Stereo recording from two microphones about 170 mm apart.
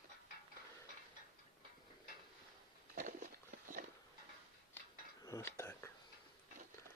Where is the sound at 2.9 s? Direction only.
45° right (ahead or behind).